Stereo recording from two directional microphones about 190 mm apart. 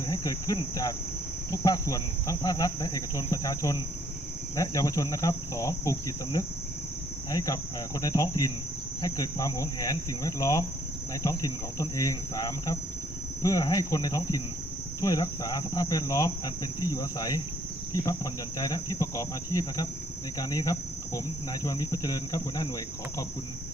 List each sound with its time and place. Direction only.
0.1 s cricket: 20° left (ahead or behind)